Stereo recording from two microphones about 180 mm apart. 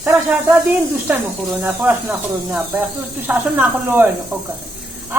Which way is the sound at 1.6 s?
10° right (ahead or behind).